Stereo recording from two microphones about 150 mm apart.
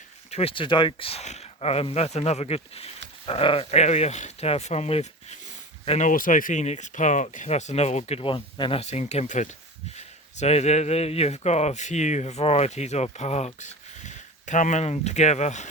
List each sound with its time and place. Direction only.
0.3 s speech: 40° left (ahead or behind)
6.1 s speech: 60° left (ahead or behind); by 8.8 s 35° left (ahead or behind)
8.8 s speech: 50° left (ahead or behind)